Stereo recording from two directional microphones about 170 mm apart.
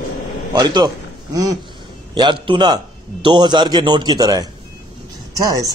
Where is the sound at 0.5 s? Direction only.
25° right (ahead or behind).